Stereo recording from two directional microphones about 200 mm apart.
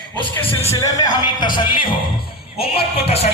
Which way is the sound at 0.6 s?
20° left (ahead or behind).